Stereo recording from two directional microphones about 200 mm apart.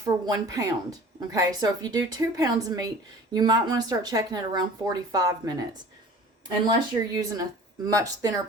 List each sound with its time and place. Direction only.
0.0 s speech: 20° right (ahead or behind)